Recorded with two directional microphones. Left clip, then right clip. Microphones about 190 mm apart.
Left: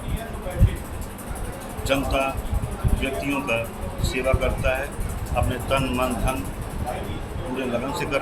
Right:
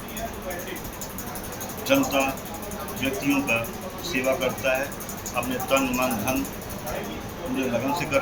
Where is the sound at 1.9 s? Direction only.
30° left (ahead or behind).